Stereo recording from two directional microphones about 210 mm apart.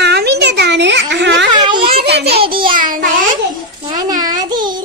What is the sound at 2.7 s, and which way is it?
Speech, 40° right (ahead or behind).